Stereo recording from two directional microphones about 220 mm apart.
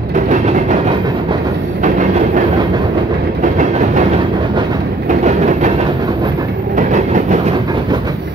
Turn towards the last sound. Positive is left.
turn(degrees=-35)  # may be behind; listen again after turning